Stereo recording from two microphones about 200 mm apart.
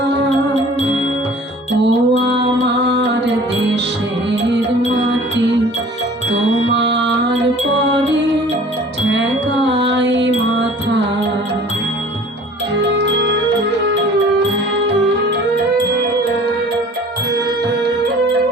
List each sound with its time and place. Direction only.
1.7 s music: 60° right (ahead or behind)
6.7 s music: 60° right (ahead or behind)
9.6 s music: 60° right (ahead or behind)
13.0 s music: 60° right (ahead or behind)